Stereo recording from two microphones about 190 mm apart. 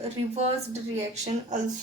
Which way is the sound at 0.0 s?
35° right (ahead or behind).